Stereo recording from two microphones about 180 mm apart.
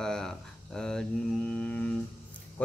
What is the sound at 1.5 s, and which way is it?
Music, 5° left (ahead or behind).